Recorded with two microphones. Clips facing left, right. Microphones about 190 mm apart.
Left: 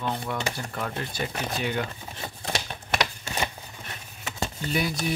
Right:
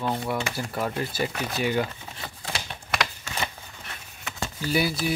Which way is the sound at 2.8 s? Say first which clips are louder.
Even; 25° left (ahead or behind).